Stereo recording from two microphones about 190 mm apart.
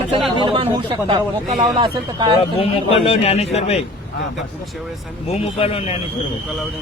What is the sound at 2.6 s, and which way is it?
A man's voice, 30° left (ahead or behind).